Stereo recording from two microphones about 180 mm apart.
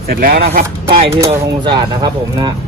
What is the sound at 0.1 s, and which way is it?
Speech, 55° right (ahead or behind).